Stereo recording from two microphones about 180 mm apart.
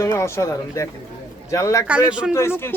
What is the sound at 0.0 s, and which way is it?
A man's voice, 15° left (ahead or behind).